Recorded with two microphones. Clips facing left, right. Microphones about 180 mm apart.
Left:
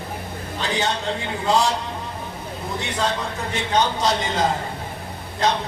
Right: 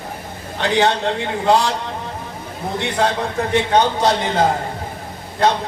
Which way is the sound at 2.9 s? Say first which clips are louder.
Right 6 dB; 60° right (ahead or behind).